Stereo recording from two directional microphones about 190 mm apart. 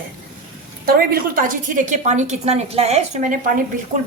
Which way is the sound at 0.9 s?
50° right (ahead or behind).